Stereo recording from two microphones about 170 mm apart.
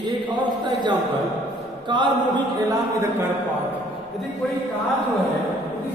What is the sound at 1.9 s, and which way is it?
Speech, 25° right (ahead or behind).